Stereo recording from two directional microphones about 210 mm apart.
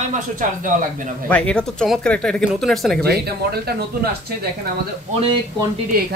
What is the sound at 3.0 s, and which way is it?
Speech, 50° right (ahead or behind).